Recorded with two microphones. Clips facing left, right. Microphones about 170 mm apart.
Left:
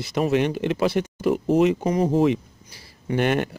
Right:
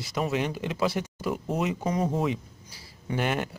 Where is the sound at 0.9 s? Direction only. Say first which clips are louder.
Left 7 dB; 65° left (ahead or behind).